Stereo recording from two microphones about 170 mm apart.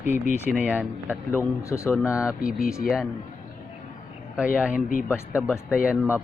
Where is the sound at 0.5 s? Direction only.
5° right (ahead or behind).